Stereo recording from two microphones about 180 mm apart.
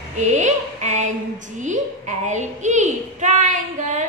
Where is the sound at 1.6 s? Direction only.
40° right (ahead or behind).